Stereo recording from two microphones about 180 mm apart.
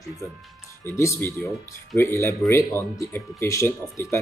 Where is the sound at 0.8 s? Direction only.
15° left (ahead or behind).